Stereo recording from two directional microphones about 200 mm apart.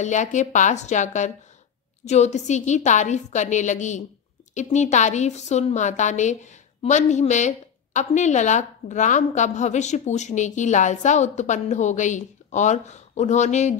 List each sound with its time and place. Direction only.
0.0 s a woman's voice: 35° left (ahead or behind)